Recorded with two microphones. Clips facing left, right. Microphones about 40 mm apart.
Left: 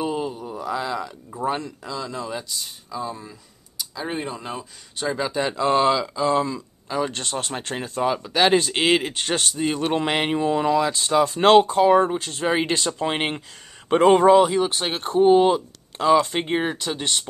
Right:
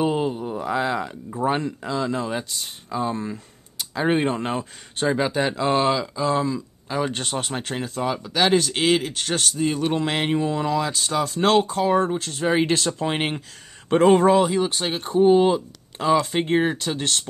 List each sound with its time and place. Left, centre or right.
0.0 s a sound: right
1.5 s speech: right
5.0 s speech: centre
5.4 s speech: centre
7.7 s speech: centre
11.3 s speech: left
11.7 s speech: centre
15.1 s speech: left
16.2 s speech: centre